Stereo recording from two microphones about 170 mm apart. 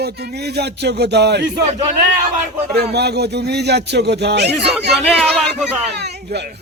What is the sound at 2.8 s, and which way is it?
A man's voice, 75° right (ahead or behind).